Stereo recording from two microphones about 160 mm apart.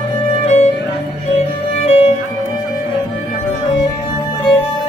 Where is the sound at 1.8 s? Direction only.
40° left (ahead or behind).